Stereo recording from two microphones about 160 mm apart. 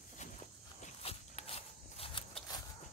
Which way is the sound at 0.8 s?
40° left (ahead or behind).